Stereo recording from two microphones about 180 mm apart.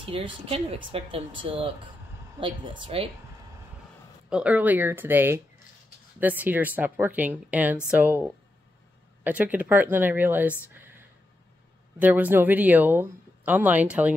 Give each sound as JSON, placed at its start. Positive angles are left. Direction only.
{"t": 0.0, "sound": "speech", "side_deg": -30}
{"t": 4.3, "sound": "speech", "side_deg": -5}
{"t": 10.7, "sound": "a sound", "side_deg": -10}
{"t": 12.0, "sound": "speech", "side_deg": -10}